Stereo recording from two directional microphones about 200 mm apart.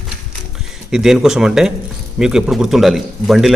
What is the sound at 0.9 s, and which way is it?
Speech, centre (ahead or behind).